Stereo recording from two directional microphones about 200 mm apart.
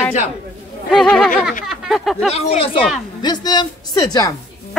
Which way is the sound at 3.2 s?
20° left (ahead or behind).